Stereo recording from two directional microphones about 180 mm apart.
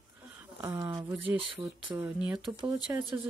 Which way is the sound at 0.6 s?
15° right (ahead or behind).